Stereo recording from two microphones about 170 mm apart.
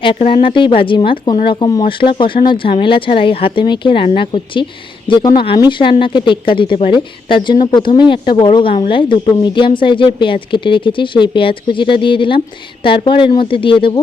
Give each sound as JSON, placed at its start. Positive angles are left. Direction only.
{"t": 0.2, "sound": "speech", "side_deg": 35}